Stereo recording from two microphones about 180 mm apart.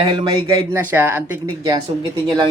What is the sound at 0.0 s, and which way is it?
Speech, 25° right (ahead or behind).